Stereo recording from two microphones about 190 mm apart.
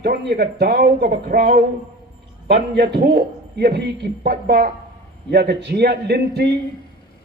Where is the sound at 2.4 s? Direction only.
60° right (ahead or behind).